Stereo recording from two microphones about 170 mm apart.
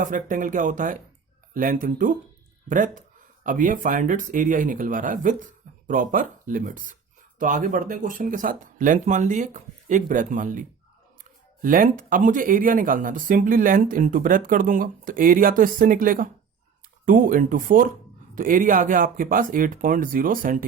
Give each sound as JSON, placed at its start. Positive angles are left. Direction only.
{"t": 0.0, "sound": "speech", "side_deg": -50}